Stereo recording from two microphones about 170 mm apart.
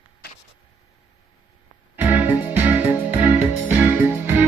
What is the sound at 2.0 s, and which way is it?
Music, 10° right (ahead or behind).